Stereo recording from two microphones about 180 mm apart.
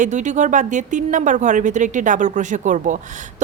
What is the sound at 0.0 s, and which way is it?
Speech, 40° right (ahead or behind).